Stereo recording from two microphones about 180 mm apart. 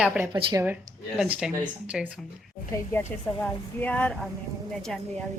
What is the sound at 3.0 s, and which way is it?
Speech, 10° left (ahead or behind).